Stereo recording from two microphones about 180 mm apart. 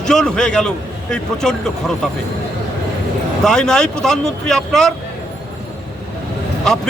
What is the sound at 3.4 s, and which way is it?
Speech, 5° left (ahead or behind).